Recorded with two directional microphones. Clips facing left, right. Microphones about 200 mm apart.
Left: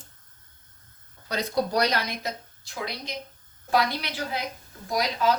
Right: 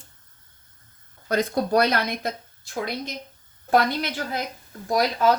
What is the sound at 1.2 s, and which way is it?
Speech, 50° right (ahead or behind).